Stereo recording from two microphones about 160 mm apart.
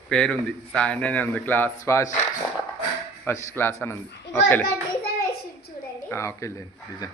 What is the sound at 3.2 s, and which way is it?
Speech, 15° left (ahead or behind).